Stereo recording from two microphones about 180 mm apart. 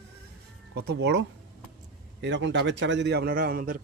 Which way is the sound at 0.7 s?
70° right (ahead or behind).